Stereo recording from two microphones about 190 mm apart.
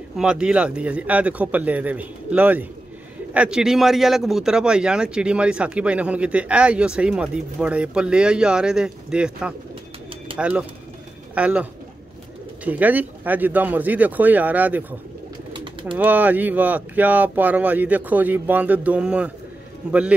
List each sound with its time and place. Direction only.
0.2 s a man's voice: 5° right (ahead or behind)
12.6 s speech: 10° right (ahead or behind)
15.5 s bird: 25° right (ahead or behind)
16.0 s speech: 10° right (ahead or behind)